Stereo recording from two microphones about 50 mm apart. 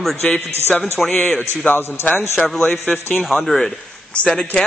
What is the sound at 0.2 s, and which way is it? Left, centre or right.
Speech, centre.